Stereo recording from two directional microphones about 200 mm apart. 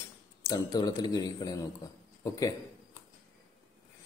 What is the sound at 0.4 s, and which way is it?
A man's voice, 20° left (ahead or behind).